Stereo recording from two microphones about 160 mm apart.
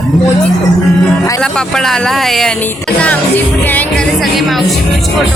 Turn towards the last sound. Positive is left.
turn(degrees=0)  # may be behind; listen again after turning